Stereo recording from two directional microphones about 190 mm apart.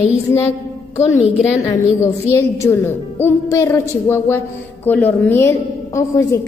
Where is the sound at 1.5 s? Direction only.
15° left (ahead or behind).